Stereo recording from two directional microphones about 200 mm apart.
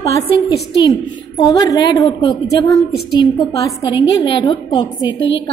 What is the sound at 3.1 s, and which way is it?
A woman's voice, 25° left (ahead or behind).